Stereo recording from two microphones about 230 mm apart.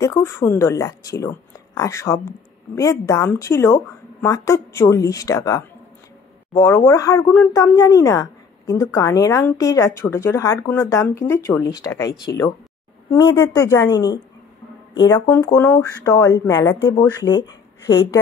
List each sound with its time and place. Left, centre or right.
0.0 s speech: centre
13.1 s speech: centre
17.4 s a sound: centre